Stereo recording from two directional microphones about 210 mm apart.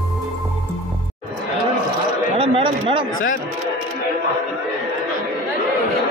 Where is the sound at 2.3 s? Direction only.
25° right (ahead or behind).